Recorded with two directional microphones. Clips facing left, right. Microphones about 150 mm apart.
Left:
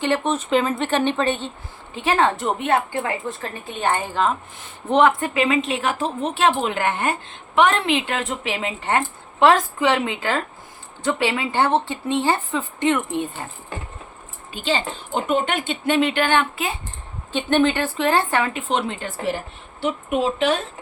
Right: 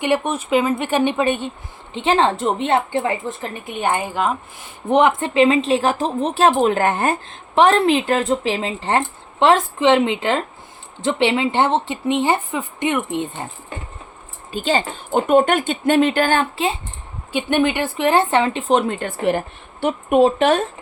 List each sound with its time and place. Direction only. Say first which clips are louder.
0.0 s speech: right 2 dB; 10° right (ahead or behind)
1.9 s a woman's voice: right 2 dB; 25° right (ahead or behind)
14.5 s speech: right 4 dB; 45° right (ahead or behind)
17.3 s speech: even; 10° right (ahead or behind)
18.7 s speech: right 6 dB; 45° right (ahead or behind)